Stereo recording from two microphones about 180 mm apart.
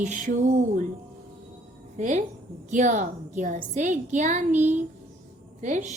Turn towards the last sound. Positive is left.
turn(degrees=-45)  # may be behind; listen again after turning